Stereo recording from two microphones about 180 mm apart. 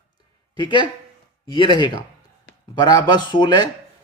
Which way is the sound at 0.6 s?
25° left (ahead or behind).